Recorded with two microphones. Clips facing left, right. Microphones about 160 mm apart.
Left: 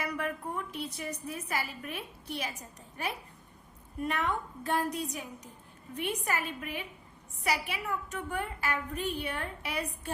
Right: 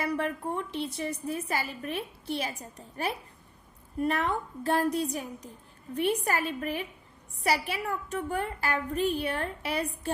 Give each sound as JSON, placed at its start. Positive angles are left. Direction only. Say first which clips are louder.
{"t": 0.0, "sound": "a woman's voice", "louder": "right 5 dB", "side_deg": -30}